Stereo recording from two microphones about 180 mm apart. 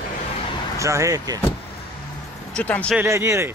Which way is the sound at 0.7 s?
15° right (ahead or behind).